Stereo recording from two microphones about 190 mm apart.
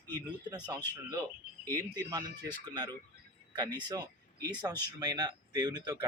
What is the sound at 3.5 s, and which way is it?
Speech, 20° right (ahead or behind).